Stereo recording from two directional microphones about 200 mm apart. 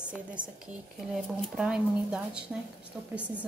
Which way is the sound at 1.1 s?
5° right (ahead or behind).